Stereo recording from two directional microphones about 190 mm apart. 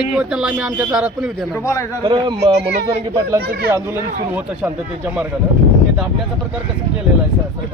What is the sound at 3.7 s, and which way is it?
Speech, 15° right (ahead or behind).